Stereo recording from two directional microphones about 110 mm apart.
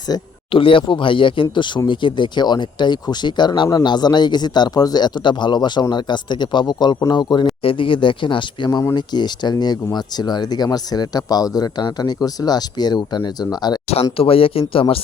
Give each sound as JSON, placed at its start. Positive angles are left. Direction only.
{"t": 0.5, "sound": "speech", "side_deg": 55}
{"t": 7.6, "sound": "speech", "side_deg": 55}
{"t": 13.9, "sound": "speech", "side_deg": 60}